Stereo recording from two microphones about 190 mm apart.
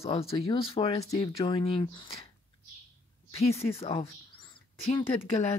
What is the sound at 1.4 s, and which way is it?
Speech, 30° left (ahead or behind).